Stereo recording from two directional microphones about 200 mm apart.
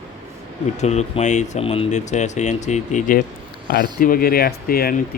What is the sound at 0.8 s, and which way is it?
Speech, 35° left (ahead or behind).